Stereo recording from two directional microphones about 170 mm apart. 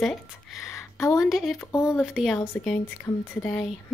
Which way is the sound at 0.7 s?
15° left (ahead or behind).